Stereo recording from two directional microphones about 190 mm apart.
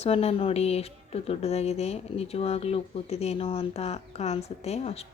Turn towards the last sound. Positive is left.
turn(degrees=35)  # may be behind; listen again after turning